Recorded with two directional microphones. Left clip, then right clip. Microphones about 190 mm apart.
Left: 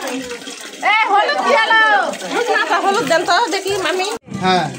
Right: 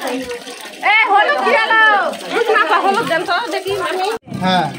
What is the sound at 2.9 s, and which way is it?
Speech, 50° left (ahead or behind).